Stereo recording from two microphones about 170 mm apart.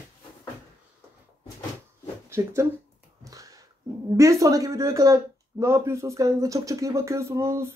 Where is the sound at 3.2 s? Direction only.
20° right (ahead or behind).